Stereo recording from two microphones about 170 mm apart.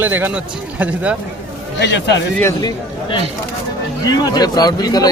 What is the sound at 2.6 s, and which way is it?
A man's voice, 30° left (ahead or behind).